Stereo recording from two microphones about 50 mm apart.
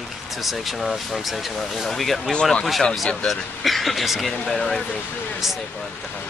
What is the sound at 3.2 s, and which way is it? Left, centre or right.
Speech, centre.